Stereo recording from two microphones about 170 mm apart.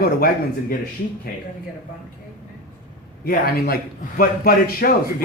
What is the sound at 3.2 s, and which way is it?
A man's voice, 60° left (ahead or behind).